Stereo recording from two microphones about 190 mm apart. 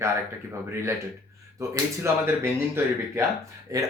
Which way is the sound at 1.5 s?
15° right (ahead or behind).